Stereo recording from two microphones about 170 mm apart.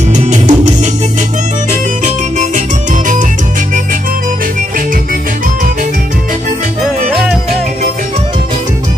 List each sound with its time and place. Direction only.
0.1 s music: 45° right (ahead or behind)
1.7 s music: 45° right (ahead or behind)